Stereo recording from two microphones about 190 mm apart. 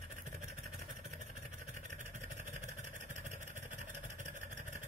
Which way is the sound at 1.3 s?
45° right (ahead or behind).